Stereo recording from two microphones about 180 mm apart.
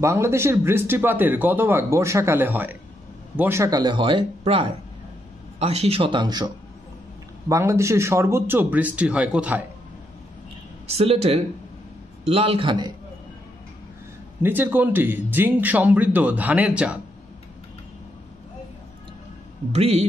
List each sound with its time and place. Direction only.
0.0 s speech: 15° right (ahead or behind)
10.9 s speech: 35° right (ahead or behind)
14.4 s speech: 10° right (ahead or behind)
19.7 s speech: 35° right (ahead or behind)